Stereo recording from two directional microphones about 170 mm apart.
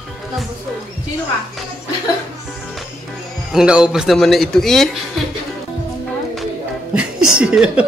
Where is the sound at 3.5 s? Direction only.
5° right (ahead or behind).